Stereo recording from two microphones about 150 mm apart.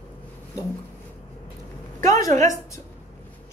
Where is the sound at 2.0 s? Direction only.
20° left (ahead or behind).